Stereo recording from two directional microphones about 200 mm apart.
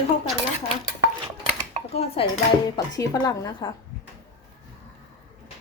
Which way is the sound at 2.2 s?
25° left (ahead or behind).